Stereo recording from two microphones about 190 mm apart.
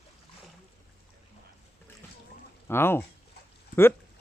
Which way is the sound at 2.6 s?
10° left (ahead or behind).